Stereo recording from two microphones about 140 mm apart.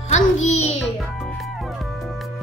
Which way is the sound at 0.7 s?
Centre (ahead or behind).